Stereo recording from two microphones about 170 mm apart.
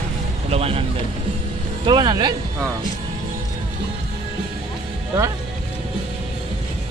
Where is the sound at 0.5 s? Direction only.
35° right (ahead or behind).